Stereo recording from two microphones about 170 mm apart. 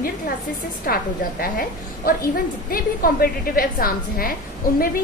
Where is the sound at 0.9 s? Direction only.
60° left (ahead or behind).